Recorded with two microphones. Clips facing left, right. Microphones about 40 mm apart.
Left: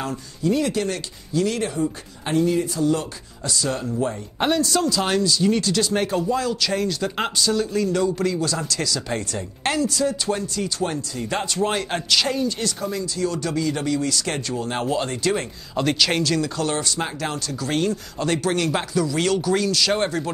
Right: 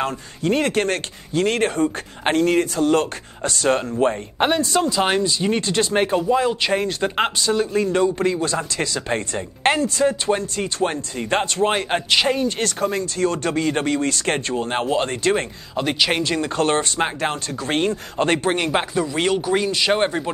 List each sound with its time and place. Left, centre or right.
0.0 s speech: right
4.4 s speech: right
12.4 s speech: right
15.7 s speech: centre